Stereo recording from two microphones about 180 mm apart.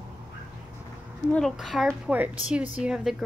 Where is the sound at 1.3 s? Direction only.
Centre (ahead or behind).